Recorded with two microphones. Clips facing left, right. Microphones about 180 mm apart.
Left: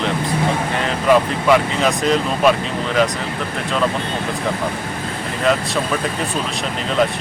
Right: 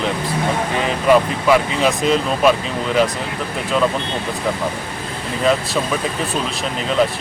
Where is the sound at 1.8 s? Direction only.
Centre (ahead or behind).